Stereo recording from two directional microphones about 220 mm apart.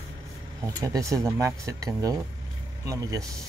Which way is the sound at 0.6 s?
15° right (ahead or behind).